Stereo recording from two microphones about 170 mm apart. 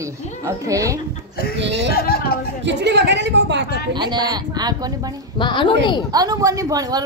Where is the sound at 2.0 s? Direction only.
65° left (ahead or behind).